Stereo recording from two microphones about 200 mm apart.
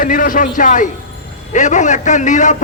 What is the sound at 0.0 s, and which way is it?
A man's voice, 45° left (ahead or behind).